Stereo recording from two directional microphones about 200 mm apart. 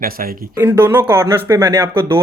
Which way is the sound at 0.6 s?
10° right (ahead or behind).